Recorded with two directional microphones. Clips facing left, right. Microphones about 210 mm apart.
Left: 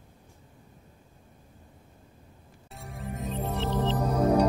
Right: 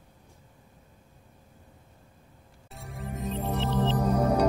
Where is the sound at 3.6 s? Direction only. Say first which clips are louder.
Right 1 dB; 15° right (ahead or behind).